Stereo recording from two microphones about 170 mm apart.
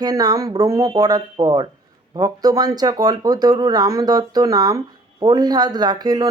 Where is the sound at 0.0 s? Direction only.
25° right (ahead or behind).